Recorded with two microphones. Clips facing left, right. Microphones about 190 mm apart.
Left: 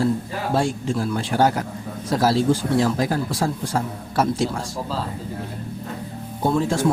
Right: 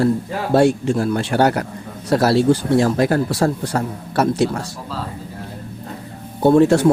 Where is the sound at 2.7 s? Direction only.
55° right (ahead or behind).